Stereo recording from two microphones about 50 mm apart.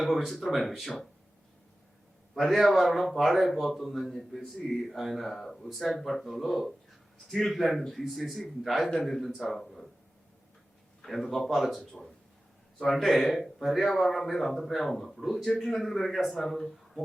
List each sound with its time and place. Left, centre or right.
0.3 s speech: centre
2.3 s speech: centre
11.0 s speech: centre
12.8 s speech: centre